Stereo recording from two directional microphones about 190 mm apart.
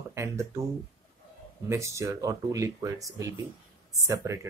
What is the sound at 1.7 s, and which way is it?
Speech, 15° right (ahead or behind).